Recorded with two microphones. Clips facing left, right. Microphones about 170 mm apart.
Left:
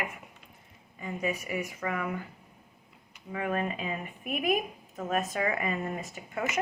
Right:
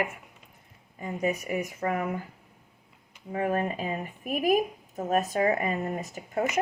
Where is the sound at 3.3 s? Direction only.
35° right (ahead or behind).